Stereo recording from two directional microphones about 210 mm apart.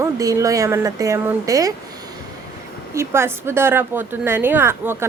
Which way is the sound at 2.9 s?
10° right (ahead or behind).